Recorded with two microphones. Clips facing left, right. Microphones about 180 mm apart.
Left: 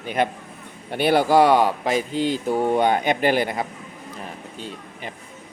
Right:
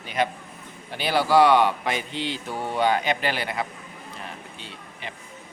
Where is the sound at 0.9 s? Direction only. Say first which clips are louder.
Left 5 dB; 55° left (ahead or behind).